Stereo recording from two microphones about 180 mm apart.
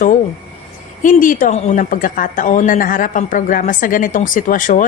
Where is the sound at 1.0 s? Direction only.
45° left (ahead or behind).